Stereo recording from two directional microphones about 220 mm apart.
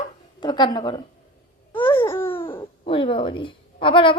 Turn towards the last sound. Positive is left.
turn(degrees=25)  # may be behind; listen again after turning